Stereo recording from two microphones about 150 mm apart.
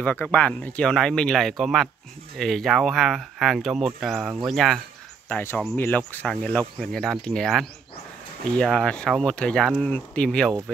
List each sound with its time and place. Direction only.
0.0 s speech: 10° left (ahead or behind)
5.3 s speech: 15° left (ahead or behind)